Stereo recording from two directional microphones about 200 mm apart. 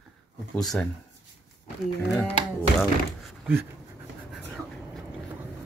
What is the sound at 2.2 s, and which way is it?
Speech, centre (ahead or behind).